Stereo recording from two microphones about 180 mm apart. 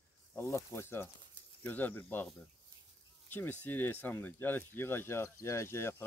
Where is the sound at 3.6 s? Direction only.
10° left (ahead or behind).